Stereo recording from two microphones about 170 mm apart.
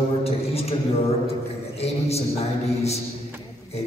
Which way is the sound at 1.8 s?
35° left (ahead or behind).